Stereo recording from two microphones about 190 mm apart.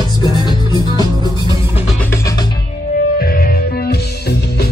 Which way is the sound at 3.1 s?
50° left (ahead or behind).